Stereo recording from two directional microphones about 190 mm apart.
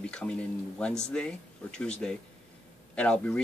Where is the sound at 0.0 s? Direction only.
5° left (ahead or behind).